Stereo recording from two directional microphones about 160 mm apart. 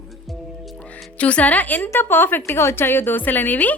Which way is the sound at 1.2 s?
10° left (ahead or behind).